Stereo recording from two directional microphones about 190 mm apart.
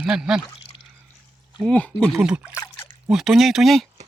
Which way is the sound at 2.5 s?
10° left (ahead or behind).